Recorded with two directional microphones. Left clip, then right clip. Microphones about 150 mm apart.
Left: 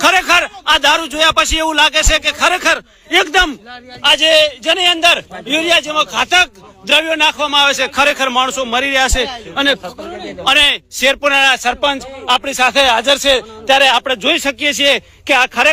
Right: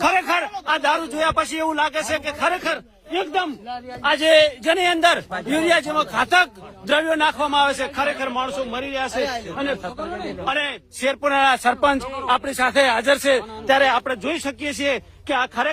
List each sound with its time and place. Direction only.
0.0 s a man's voice: 25° left (ahead or behind)
2.6 s speech: 50° left (ahead or behind)
3.7 s a man's voice: 5° right (ahead or behind)
4.2 s a man's voice: 20° right (ahead or behind); by 7.6 s centre (ahead or behind)
7.9 s speech: 45° left (ahead or behind)
8.4 s a man's voice: 65° left (ahead or behind)
9.6 s a man's voice: 45° left (ahead or behind)
11.0 s speech: 15° left (ahead or behind)
11.3 s a man's voice: 5° right (ahead or behind)
12.2 s a man's voice: centre (ahead or behind)
14.0 s a man's voice: 15° left (ahead or behind)